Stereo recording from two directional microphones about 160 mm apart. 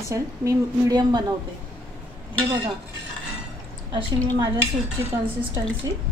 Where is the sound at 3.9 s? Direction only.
30° right (ahead or behind).